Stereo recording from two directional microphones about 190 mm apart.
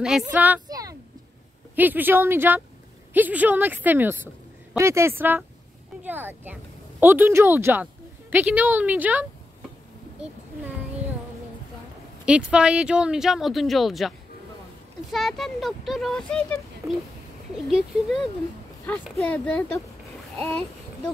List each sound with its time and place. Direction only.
0.2 s a woman's voice: 10° right (ahead or behind)
0.7 s a sound: 20° right (ahead or behind)
1.8 s a woman's voice: 10° right (ahead or behind)
12.3 s speech: 5° right (ahead or behind)
17.6 s speech: centre (ahead or behind)